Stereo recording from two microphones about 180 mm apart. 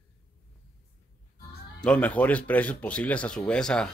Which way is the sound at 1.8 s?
5° left (ahead or behind).